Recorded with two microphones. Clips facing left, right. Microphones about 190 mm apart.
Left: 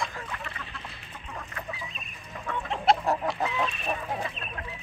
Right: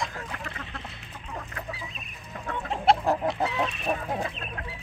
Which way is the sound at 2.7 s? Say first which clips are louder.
Right 2 dB; 30° right (ahead or behind).